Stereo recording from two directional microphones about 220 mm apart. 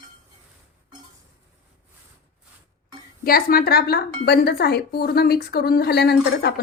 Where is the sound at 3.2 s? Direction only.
45° left (ahead or behind).